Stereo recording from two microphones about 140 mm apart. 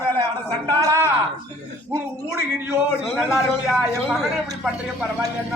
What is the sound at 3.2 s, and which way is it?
Speech, 5° right (ahead or behind).